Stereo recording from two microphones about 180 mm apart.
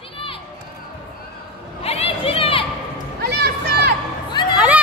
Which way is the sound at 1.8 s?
35° left (ahead or behind).